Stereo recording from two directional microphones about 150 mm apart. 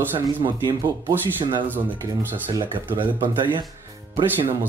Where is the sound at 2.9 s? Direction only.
30° right (ahead or behind).